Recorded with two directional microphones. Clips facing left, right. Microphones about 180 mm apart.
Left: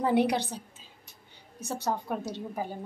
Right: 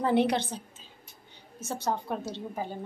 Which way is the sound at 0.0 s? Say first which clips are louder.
Even; 10° left (ahead or behind).